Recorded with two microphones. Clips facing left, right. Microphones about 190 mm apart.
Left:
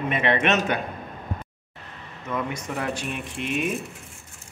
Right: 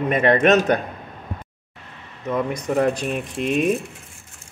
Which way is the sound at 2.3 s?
35° right (ahead or behind).